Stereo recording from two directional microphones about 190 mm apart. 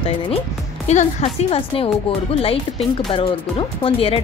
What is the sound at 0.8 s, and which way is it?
Speech, 35° left (ahead or behind).